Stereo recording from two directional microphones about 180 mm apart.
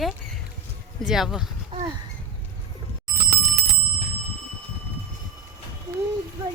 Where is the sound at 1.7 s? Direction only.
30° right (ahead or behind).